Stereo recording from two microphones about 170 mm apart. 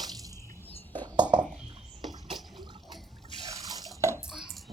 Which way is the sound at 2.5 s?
25° right (ahead or behind).